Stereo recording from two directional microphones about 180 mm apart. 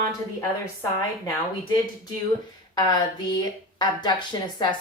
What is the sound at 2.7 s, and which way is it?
Speech, 25° left (ahead or behind).